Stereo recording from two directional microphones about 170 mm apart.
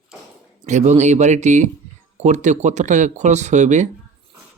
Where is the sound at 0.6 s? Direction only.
45° right (ahead or behind).